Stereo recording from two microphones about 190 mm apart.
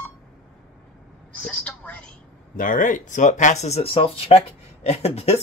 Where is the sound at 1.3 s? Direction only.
5° left (ahead or behind).